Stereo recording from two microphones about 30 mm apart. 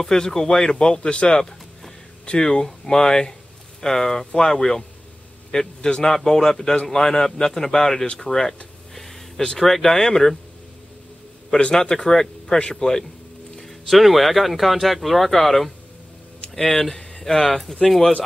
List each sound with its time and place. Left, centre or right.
0.0 s speech: centre
5.8 s speech: left
6.0 s speech: centre
6.9 s speech: centre
9.6 s speech: centre
11.8 s speech: left
12.1 s speech: centre
13.8 s speech: centre